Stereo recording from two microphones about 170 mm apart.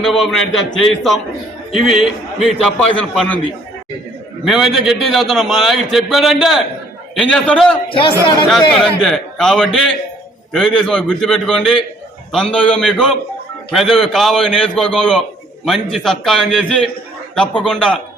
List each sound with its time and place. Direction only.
0.0 s a man's voice: centre (ahead or behind)
4.4 s a man's voice: centre (ahead or behind)
7.9 s a man's voice: 30° left (ahead or behind)
8.8 s a man's voice: centre (ahead or behind)